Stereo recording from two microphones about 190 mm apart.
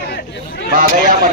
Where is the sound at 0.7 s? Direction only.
45° right (ahead or behind).